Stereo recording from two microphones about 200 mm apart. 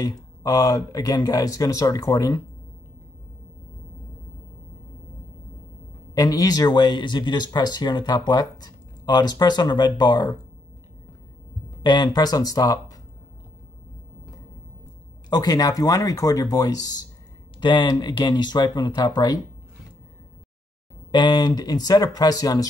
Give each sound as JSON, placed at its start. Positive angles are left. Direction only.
{"t": 0.0, "sound": "speech", "side_deg": 20}
{"t": 6.1, "sound": "speech", "side_deg": 20}
{"t": 11.8, "sound": "speech", "side_deg": 20}
{"t": 15.2, "sound": "speech", "side_deg": 20}
{"t": 21.1, "sound": "speech", "side_deg": 20}